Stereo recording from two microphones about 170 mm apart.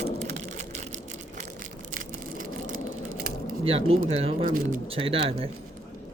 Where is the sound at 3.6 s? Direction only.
35° right (ahead or behind).